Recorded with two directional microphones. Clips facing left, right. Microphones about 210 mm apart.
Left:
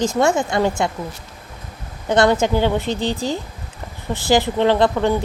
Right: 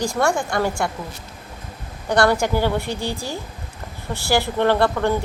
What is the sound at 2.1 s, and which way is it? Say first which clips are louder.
Speech: left 2 dB; 20° left (ahead or behind).